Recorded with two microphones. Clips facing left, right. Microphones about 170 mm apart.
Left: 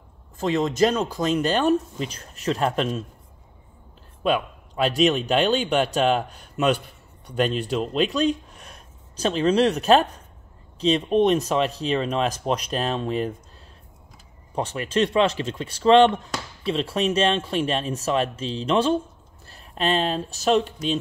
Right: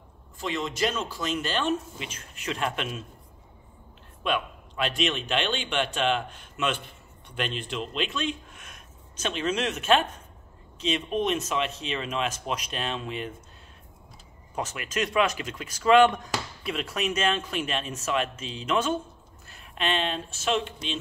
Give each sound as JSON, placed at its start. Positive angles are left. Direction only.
{"t": 0.4, "sound": "speech", "side_deg": 40}
{"t": 4.2, "sound": "speech", "side_deg": 40}
{"t": 14.5, "sound": "speech", "side_deg": 30}